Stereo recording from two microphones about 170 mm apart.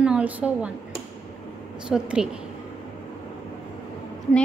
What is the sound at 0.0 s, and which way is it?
A woman's voice, 5° right (ahead or behind).